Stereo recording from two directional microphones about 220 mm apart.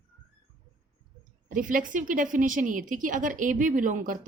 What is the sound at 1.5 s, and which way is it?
Speech, 35° right (ahead or behind).